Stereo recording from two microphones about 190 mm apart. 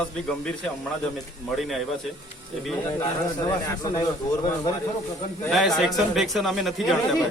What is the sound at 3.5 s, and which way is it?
Speech, 20° left (ahead or behind).